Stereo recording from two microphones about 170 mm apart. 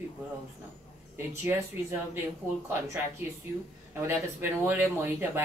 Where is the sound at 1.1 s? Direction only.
15° right (ahead or behind).